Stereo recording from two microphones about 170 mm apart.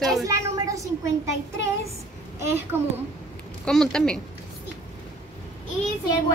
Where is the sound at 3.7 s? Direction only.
5° left (ahead or behind).